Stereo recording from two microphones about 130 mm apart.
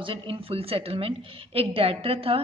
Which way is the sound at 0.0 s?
45° right (ahead or behind).